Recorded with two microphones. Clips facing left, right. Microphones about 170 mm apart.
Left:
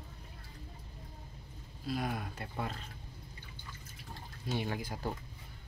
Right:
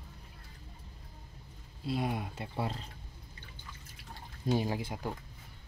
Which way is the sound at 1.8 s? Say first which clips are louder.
Right 3 dB; 25° right (ahead or behind).